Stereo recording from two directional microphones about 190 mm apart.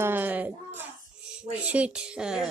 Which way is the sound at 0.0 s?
10° right (ahead or behind).